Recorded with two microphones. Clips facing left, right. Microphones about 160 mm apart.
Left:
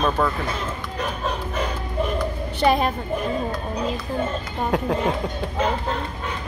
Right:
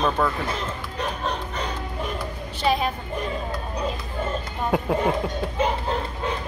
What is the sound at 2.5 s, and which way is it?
Speech, 55° left (ahead or behind).